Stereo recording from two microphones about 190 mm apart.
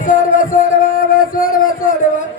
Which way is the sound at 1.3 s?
50° left (ahead or behind).